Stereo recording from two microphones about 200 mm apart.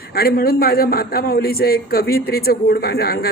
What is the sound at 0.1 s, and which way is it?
Speech, 50° left (ahead or behind).